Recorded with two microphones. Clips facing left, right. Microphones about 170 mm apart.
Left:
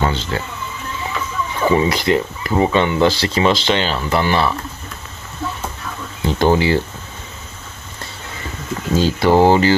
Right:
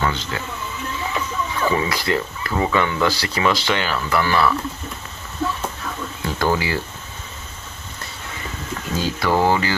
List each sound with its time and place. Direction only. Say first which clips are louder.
0.0 s speech: left 4 dB; 30° left (ahead or behind)
1.6 s speech: left 6 dB; 25° left (ahead or behind)
6.2 s speech: left 6 dB; 25° left (ahead or behind)
8.9 s speech: left 7 dB; 30° left (ahead or behind)